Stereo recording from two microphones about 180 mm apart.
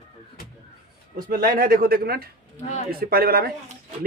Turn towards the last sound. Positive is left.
turn(degrees=-55)  # may be behind; listen again after turning